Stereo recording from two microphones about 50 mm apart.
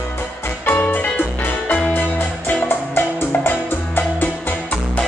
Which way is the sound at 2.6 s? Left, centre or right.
Left.